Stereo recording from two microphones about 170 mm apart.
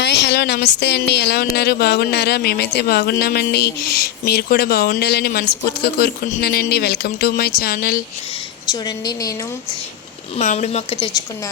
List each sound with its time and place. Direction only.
0.0 s speech: 90° left; by 8.0 s 60° left (ahead or behind)
8.7 s a woman's voice: 20° left (ahead or behind)
10.3 s speech: 40° left (ahead or behind)